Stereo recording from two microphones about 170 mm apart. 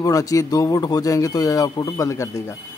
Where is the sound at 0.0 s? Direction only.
20° left (ahead or behind).